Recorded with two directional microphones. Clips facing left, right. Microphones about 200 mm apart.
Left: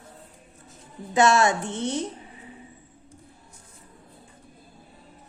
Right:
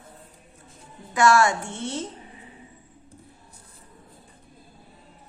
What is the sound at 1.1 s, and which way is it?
Speech, 20° left (ahead or behind).